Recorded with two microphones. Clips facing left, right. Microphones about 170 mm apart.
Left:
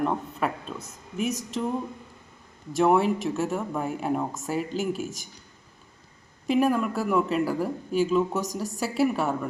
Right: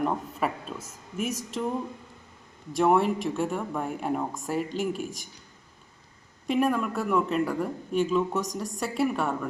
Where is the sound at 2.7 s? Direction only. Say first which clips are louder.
Left 1 dB; centre (ahead or behind).